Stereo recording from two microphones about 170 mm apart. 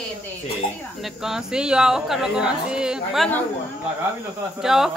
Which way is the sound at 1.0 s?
5° right (ahead or behind).